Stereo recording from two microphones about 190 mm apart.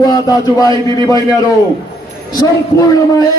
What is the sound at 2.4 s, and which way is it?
Speech, 20° left (ahead or behind).